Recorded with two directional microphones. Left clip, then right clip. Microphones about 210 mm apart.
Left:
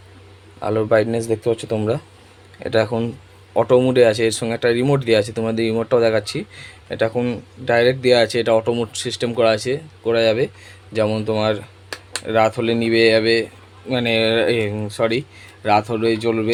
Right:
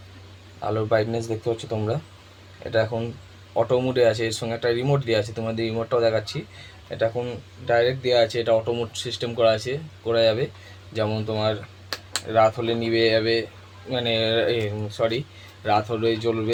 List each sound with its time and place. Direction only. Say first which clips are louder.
0.6 s speech: left 6 dB; 50° left (ahead or behind)